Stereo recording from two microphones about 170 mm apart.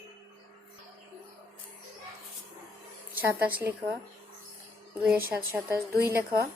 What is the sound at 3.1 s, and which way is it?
Speech, 10° right (ahead or behind).